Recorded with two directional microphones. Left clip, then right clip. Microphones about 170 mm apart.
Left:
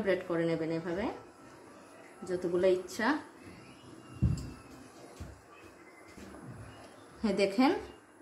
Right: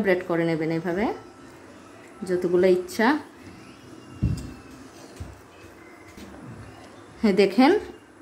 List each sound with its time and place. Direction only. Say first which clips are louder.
0.0 s a woman's voice: right 8 dB; 55° right (ahead or behind)
2.2 s a woman's voice: right 9 dB; 55° right (ahead or behind)
7.2 s a woman's voice: right 10 dB; 45° right (ahead or behind)